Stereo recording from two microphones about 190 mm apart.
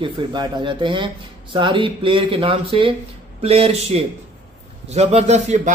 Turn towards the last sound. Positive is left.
turn(degrees=-40)  # may be behind; listen again after turning